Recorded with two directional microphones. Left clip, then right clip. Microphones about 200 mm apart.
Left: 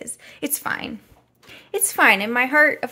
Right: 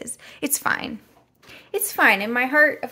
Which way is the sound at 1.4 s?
10° left (ahead or behind).